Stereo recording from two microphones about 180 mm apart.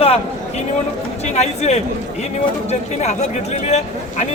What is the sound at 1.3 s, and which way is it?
Speech, 40° left (ahead or behind).